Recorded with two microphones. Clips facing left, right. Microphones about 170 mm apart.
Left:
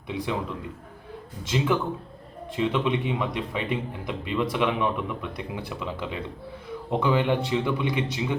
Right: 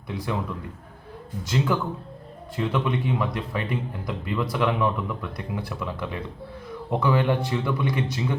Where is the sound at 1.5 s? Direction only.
15° left (ahead or behind).